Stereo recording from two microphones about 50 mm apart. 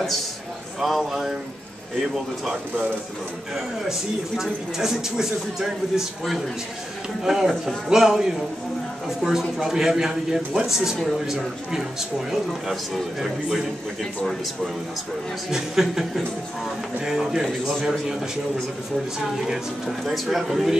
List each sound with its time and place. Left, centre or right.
0.7 s speech: centre
4.4 s speech: centre
11.0 s speech: centre
11.2 s speech: centre
15.5 s speech: centre
19.1 s speech: centre